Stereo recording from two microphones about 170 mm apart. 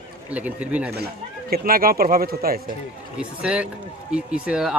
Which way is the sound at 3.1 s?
5° right (ahead or behind).